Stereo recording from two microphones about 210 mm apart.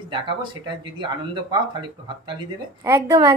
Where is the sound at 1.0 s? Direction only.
20° right (ahead or behind).